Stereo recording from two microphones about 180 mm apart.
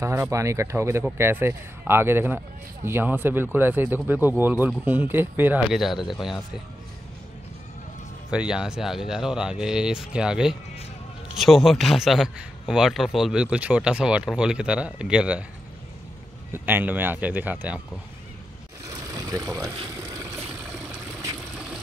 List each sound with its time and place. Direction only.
0.0 s speech: 15° right (ahead or behind)
8.3 s a man's voice: 5° right (ahead or behind)
16.5 s speech: 10° right (ahead or behind)
18.9 s vehicle: 20° right (ahead or behind)
20.1 s a sound: 15° right (ahead or behind)